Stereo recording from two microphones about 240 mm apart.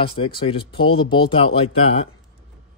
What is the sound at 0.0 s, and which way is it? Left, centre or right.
Speech, left.